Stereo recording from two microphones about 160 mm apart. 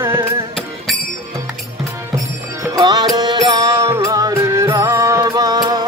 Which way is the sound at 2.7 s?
25° right (ahead or behind).